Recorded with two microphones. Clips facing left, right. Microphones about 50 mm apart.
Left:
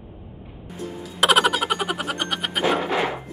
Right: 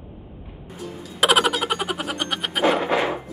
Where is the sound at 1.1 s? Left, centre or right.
Centre.